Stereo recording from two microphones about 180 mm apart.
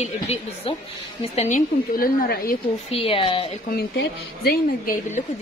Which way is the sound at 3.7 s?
60° left (ahead or behind).